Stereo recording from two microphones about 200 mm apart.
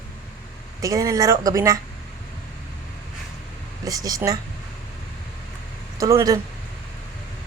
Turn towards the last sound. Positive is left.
turn(degrees=-15)  # may be behind; listen again after turning